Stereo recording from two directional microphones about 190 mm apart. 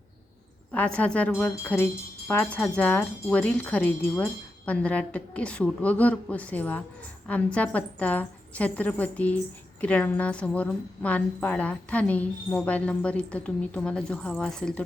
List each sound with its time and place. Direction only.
0.7 s speech: 5° left (ahead or behind)